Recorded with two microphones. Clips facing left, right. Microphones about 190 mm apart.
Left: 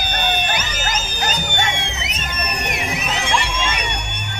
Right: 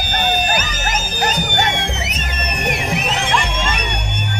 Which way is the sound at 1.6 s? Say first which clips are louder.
Right 3 dB; 45° right (ahead or behind).